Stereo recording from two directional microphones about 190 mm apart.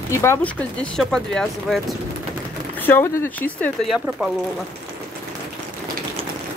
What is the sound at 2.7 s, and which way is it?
Speech, 10° left (ahead or behind).